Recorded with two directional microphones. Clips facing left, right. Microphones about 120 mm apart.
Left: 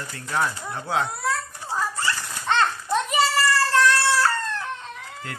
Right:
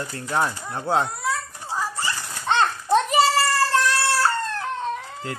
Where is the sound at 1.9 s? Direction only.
25° right (ahead or behind).